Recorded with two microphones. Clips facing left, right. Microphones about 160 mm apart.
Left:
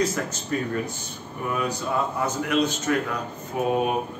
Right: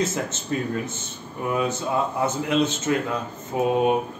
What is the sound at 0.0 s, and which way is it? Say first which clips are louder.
A man's voice: even; 25° right (ahead or behind).